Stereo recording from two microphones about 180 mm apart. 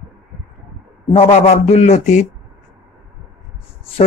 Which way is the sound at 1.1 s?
35° left (ahead or behind).